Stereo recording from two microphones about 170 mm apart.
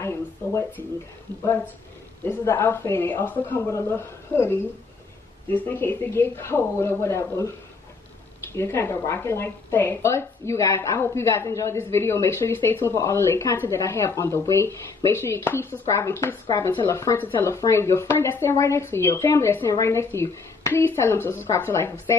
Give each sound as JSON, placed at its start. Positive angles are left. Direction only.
{"t": 0.0, "sound": "speech", "side_deg": 15}
{"t": 2.2, "sound": "a woman's voice", "side_deg": 15}
{"t": 8.5, "sound": "a woman's voice", "side_deg": 15}